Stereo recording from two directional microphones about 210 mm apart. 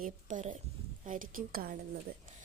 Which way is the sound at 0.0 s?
35° right (ahead or behind).